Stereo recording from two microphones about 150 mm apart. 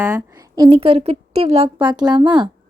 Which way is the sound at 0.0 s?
20° right (ahead or behind).